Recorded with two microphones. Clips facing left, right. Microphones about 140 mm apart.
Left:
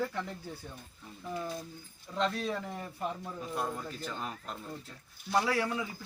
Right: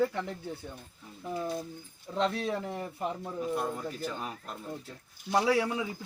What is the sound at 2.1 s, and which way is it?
Speech, 10° right (ahead or behind).